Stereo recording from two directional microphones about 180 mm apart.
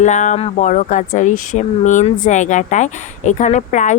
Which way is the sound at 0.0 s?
45° left (ahead or behind).